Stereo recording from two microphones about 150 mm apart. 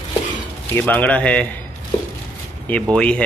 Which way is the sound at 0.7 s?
10° left (ahead or behind).